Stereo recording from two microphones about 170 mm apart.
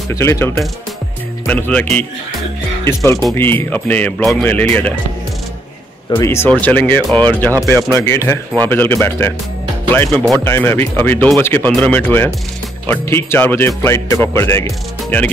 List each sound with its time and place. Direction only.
0.1 s speech: 15° left (ahead or behind)
6.0 s speech: 20° left (ahead or behind)
10.4 s speech: 15° left (ahead or behind)